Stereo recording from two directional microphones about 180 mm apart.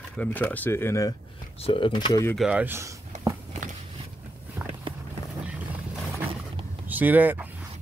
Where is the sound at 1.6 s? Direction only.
30° left (ahead or behind).